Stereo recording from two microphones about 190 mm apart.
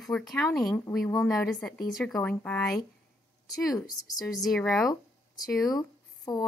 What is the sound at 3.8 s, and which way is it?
Speech, centre (ahead or behind).